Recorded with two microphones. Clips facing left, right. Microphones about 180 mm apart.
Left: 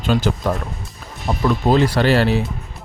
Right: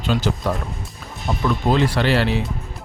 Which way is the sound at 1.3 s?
45° left (ahead or behind).